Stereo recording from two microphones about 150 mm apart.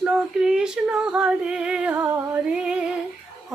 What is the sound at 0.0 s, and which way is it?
Female singing, 5° right (ahead or behind).